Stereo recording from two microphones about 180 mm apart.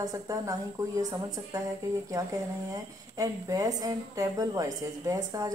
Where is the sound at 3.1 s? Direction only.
20° right (ahead or behind).